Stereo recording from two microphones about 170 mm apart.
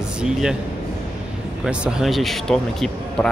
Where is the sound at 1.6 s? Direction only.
Centre (ahead or behind).